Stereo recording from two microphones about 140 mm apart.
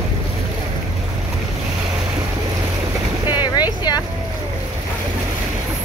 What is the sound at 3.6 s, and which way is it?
Vehicle, 30° left (ahead or behind).